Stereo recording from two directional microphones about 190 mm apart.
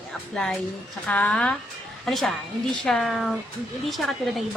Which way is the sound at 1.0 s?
5° left (ahead or behind).